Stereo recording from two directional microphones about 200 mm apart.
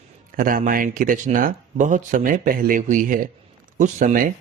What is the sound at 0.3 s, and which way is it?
A man's voice, 45° right (ahead or behind).